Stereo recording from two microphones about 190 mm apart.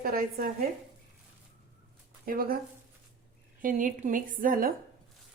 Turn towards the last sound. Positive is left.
turn(degrees=-45)  # may be behind; listen again after turning